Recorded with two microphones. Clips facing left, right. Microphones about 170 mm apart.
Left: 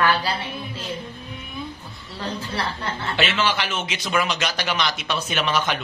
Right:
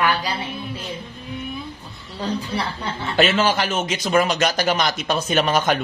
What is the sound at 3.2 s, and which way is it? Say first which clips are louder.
A man's voice: right 6 dB; 40° right (ahead or behind).